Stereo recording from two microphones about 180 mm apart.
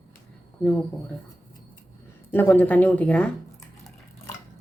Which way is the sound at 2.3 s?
10° left (ahead or behind).